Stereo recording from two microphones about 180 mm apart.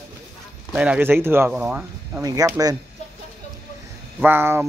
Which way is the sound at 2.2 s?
20° right (ahead or behind).